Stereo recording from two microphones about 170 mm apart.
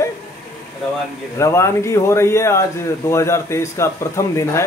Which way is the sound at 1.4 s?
15° left (ahead or behind).